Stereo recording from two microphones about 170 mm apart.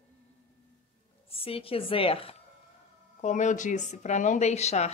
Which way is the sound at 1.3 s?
35° left (ahead or behind).